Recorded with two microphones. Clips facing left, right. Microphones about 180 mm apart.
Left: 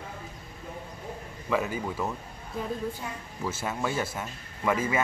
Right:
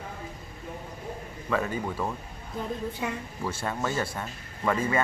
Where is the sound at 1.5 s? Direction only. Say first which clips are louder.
Even; 10° left (ahead or behind).